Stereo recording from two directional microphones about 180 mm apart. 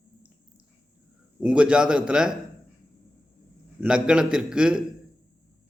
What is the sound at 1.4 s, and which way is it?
Speech, 5° right (ahead or behind).